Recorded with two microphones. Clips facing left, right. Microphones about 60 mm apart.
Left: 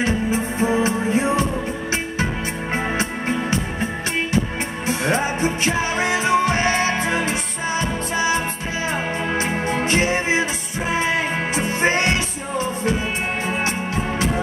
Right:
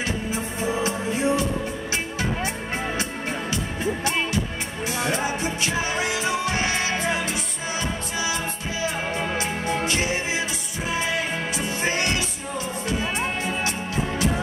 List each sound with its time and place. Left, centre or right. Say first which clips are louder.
0.0 s music: left 6 dB; left
3.0 s music: left 5 dB; left
9.3 s music: left 4 dB; left